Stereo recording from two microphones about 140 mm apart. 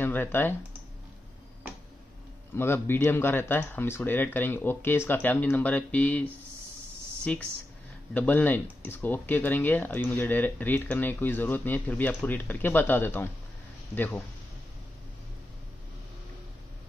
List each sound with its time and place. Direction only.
0.0 s speech: 15° left (ahead or behind)
2.5 s speech: 15° left (ahead or behind)
7.3 s speech: 5° left (ahead or behind)